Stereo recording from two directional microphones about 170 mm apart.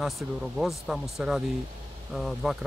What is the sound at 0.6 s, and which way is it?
Speech, centre (ahead or behind).